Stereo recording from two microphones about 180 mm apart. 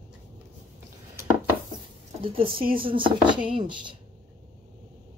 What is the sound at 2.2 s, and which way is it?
Speech, 30° right (ahead or behind).